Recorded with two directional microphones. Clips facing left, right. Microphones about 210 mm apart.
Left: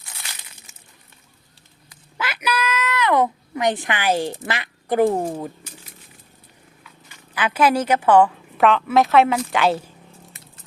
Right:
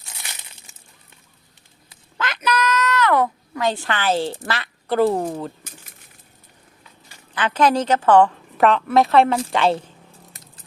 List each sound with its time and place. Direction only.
2.1 s a sound: 10° left (ahead or behind)
7.3 s a woman's voice: 10° left (ahead or behind)
10.3 s keys jangling: 40° right (ahead or behind)